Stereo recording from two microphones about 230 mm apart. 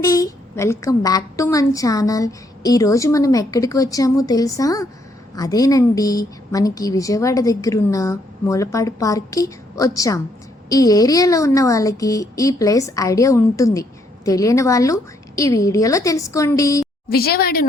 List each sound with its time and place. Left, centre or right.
0.0 s a woman's voice: centre
17.1 s a woman's voice: left